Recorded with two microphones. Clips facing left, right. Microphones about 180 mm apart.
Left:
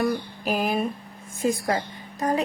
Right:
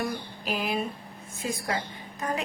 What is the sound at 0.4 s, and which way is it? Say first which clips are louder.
A woman's voice: left 5 dB; 45° left (ahead or behind).